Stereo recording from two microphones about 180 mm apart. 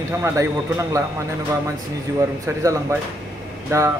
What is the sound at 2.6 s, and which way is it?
Speech, 15° right (ahead or behind).